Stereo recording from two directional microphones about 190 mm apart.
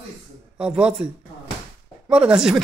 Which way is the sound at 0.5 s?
5° right (ahead or behind).